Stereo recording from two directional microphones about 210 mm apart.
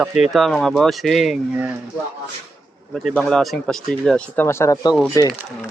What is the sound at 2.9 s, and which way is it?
Speech, centre (ahead or behind).